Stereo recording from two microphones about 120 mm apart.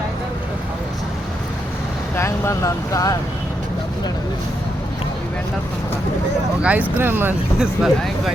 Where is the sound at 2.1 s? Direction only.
25° left (ahead or behind).